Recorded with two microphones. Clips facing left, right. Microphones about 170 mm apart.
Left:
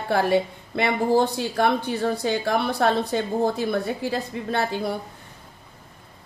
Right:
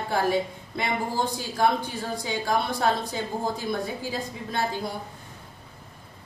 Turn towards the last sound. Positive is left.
turn(degrees=65)  # may be behind; listen again after turning